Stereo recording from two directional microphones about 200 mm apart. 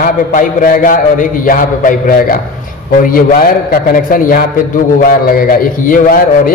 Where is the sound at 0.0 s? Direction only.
40° left (ahead or behind).